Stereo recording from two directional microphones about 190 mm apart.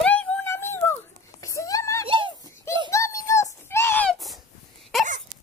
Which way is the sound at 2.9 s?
15° left (ahead or behind).